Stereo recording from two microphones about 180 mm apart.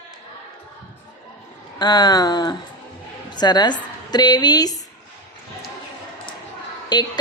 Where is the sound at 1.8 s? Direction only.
20° left (ahead or behind).